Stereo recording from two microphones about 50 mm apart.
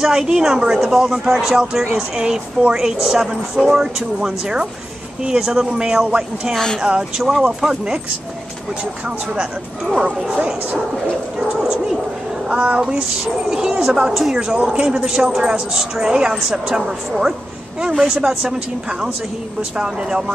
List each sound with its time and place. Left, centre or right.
0.0 s speech: centre
2.2 s a man's voice: centre
9.0 s speech: centre
10.3 s speech: right
11.7 s speech: centre
12.4 s a man's voice: right
13.5 s a man's voice: centre